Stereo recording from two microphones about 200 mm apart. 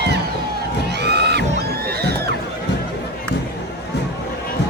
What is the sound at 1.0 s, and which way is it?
Crowd, 55° right (ahead or behind).